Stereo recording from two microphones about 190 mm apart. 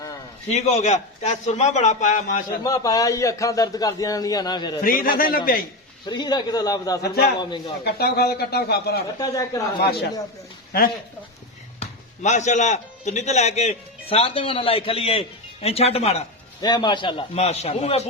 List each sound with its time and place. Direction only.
0.5 s speech: 35° left (ahead or behind)
2.6 s a man's voice: 20° left (ahead or behind)
4.8 s a man's voice: 50° left (ahead or behind)
6.1 s a man's voice: 20° left (ahead or behind)
7.9 s a man's voice: 55° left (ahead or behind)
9.1 s a man's voice: 20° left (ahead or behind)
9.8 s a man's voice: 55° left (ahead or behind)
11.8 s a man's voice: 40° left (ahead or behind)